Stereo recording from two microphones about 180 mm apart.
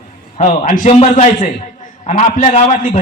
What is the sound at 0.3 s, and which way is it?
A man's voice, 45° left (ahead or behind).